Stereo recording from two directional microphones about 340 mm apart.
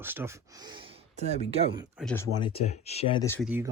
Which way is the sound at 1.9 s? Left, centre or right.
Centre.